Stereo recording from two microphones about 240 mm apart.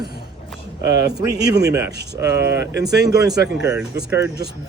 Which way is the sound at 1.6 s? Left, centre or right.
Centre.